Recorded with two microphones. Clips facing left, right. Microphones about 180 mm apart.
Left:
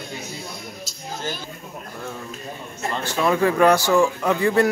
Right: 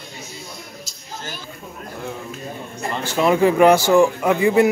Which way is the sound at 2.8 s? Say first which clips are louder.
Right 3 dB; 15° right (ahead or behind).